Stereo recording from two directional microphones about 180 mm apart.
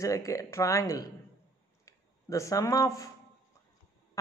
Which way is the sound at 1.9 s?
15° left (ahead or behind).